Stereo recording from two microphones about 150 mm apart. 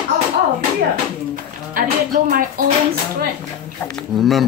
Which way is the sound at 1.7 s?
65° right (ahead or behind).